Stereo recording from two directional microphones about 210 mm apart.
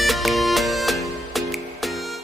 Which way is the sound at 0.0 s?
Centre (ahead or behind).